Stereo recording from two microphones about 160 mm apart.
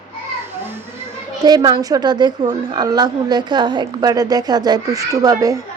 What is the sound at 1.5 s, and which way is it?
A woman's voice, 25° right (ahead or behind).